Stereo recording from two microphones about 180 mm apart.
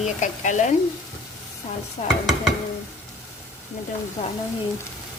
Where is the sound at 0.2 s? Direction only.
45° left (ahead or behind).